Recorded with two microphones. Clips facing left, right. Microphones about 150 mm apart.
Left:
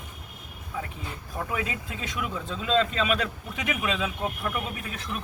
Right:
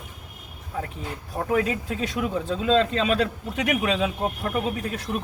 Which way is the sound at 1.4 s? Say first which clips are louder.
Right 8 dB; 40° right (ahead or behind).